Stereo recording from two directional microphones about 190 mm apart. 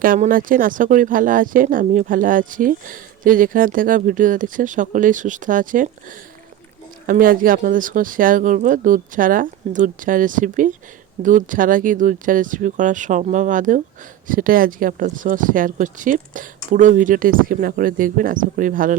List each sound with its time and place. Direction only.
0.0 s speech: 45° right (ahead or behind)